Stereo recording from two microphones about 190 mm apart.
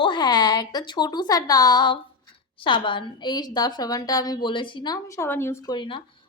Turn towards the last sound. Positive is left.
turn(degrees=25)  # may be behind; listen again after turning